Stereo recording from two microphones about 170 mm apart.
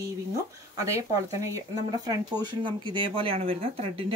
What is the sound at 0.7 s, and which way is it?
A woman's voice, 20° right (ahead or behind).